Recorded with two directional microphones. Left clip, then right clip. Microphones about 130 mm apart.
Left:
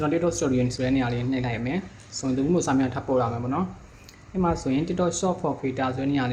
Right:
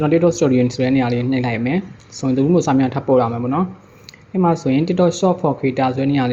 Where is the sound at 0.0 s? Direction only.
30° right (ahead or behind).